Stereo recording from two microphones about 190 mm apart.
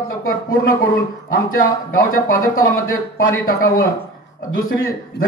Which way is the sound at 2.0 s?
50° left (ahead or behind).